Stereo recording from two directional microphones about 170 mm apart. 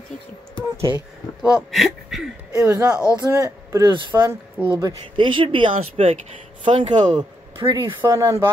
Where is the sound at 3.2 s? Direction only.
20° right (ahead or behind).